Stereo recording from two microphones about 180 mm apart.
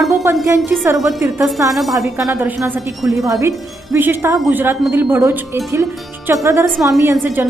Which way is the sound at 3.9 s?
10° right (ahead or behind).